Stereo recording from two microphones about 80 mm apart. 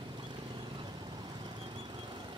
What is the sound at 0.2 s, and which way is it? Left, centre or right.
Vehicle, right.